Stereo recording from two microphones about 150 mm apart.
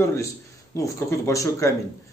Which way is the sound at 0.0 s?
20° left (ahead or behind).